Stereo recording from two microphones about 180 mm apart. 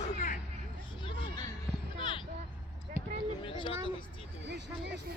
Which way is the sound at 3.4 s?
30° left (ahead or behind).